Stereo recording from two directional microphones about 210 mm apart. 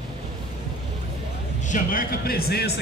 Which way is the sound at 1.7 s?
40° left (ahead or behind).